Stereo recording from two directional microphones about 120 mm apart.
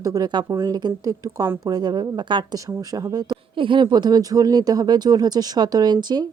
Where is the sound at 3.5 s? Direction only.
45° right (ahead or behind).